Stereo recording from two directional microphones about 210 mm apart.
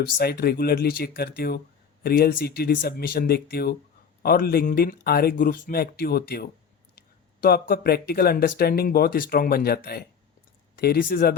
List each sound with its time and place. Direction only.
0.2 s speech: 50° left (ahead or behind)